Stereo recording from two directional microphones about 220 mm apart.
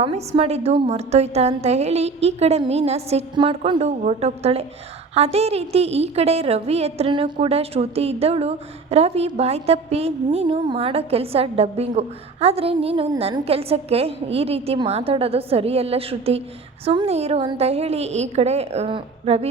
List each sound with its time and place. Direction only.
0.0 s a woman's voice: 25° right (ahead or behind)